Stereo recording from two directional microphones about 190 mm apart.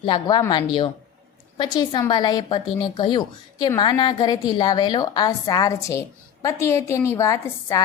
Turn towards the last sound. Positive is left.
turn(degrees=15)  # may be behind; listen again after turning